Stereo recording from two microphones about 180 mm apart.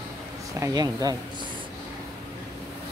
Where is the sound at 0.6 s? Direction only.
20° right (ahead or behind).